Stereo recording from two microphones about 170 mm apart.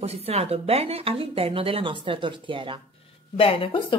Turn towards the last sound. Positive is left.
turn(degrees=30)  # may be behind; listen again after turning